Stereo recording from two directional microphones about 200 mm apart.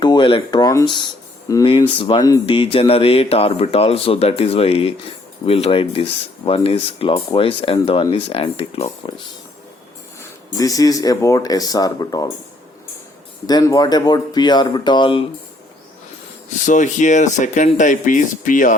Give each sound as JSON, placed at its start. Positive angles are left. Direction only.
{"t": 0.0, "sound": "speech", "side_deg": 20}
{"t": 10.2, "sound": "speech", "side_deg": 15}
{"t": 13.5, "sound": "speech", "side_deg": 20}
{"t": 16.6, "sound": "speech", "side_deg": 40}